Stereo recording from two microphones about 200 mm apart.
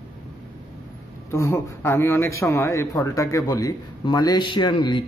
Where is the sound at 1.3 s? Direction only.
10° left (ahead or behind).